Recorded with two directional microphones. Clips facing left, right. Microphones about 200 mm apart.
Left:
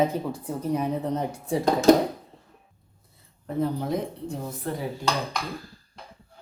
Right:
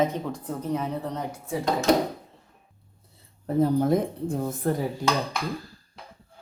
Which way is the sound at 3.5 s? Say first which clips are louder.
Right 5 dB; 50° right (ahead or behind).